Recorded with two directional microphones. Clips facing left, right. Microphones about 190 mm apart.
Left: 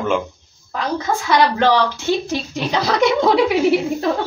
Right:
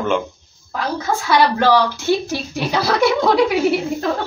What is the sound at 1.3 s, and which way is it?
A woman's voice, 10° right (ahead or behind).